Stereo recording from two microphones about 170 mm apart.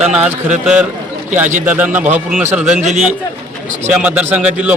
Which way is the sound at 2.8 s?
40° right (ahead or behind).